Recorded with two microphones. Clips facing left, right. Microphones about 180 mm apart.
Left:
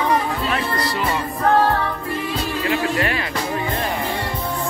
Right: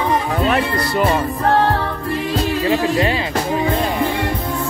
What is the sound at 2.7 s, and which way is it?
Speech, 25° right (ahead or behind).